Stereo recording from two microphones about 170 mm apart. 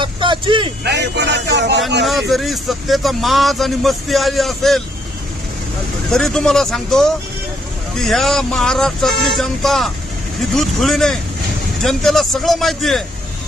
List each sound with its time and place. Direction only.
0.0 s speech: 30° right (ahead or behind)
0.9 s speech: 85° right
2.3 s speech: centre (ahead or behind)
6.1 s speech: 5° left (ahead or behind)